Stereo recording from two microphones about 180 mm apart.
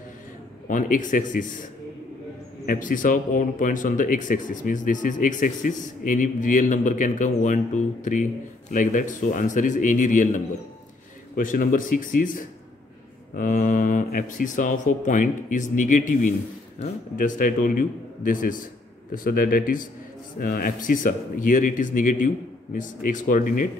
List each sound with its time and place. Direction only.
0.7 s speech: 45° left (ahead or behind)